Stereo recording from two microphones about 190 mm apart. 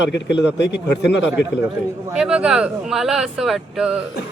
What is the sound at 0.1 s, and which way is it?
Speech, 65° left (ahead or behind).